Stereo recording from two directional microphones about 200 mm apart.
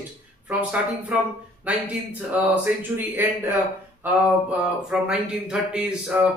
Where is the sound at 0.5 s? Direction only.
5° right (ahead or behind).